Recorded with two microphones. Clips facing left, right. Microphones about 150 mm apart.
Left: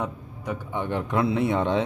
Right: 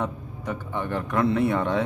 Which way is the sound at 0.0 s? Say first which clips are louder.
Right 1 dB; 15° left (ahead or behind).